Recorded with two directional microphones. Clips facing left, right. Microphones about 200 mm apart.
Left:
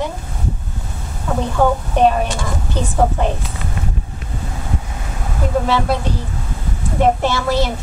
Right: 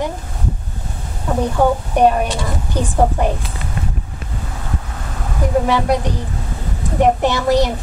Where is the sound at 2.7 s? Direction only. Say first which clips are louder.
Right 1 dB; 15° right (ahead or behind).